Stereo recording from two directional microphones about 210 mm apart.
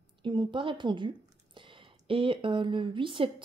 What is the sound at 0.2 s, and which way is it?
A woman's voice, 20° right (ahead or behind).